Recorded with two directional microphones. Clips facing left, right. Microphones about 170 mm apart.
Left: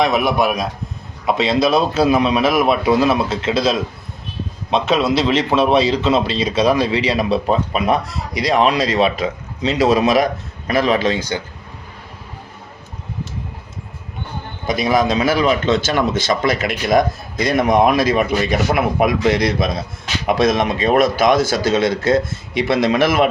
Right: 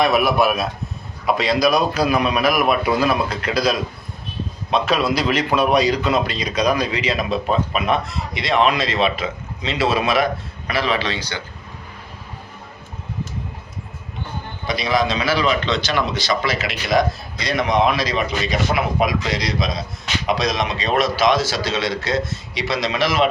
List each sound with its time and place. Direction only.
0.0 s a man's voice: 20° left (ahead or behind); by 11.3 s 45° left (ahead or behind)
14.7 s a man's voice: 50° left (ahead or behind)